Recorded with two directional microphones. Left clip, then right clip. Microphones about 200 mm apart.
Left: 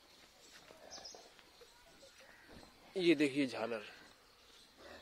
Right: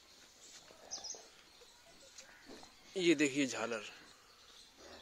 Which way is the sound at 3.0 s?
Centre (ahead or behind).